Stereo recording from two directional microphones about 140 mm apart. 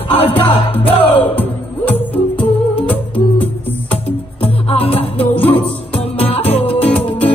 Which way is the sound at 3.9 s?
45° left (ahead or behind).